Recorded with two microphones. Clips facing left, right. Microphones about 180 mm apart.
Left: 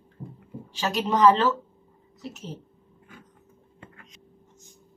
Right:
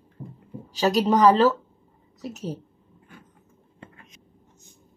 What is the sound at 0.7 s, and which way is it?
A woman's voice, 35° right (ahead or behind).